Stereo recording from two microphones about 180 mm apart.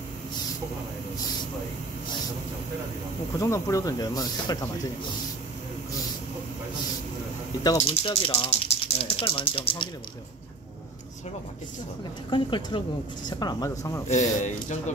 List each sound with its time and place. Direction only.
3.3 s speech: 15° left (ahead or behind)
7.8 s speech: 30° left (ahead or behind)
12.3 s speech: 25° left (ahead or behind)
14.0 s speech: 40° left (ahead or behind)